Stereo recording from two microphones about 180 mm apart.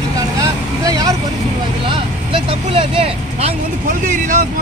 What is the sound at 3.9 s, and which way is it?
Speech, 50° right (ahead or behind).